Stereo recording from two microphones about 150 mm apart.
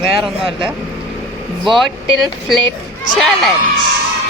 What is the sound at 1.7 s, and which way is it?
Music, centre (ahead or behind).